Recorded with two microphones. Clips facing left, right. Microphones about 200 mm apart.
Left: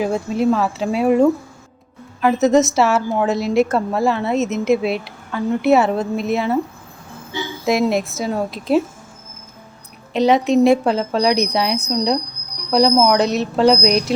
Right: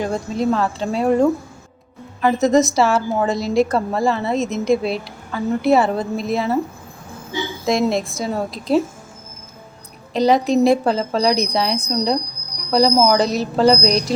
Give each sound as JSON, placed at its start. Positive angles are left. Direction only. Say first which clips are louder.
{"t": 0.0, "sound": "a woman's voice", "louder": "left 3 dB", "side_deg": 5}
{"t": 7.6, "sound": "a woman's voice", "louder": "left 1 dB", "side_deg": 5}
{"t": 10.1, "sound": "a woman's voice", "louder": "left 1 dB", "side_deg": 0}